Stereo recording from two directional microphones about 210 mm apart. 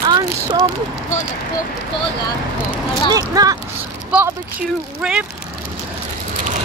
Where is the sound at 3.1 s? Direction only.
15° right (ahead or behind).